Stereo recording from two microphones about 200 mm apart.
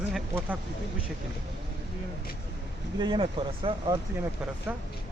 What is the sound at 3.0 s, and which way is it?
Speech, 25° right (ahead or behind).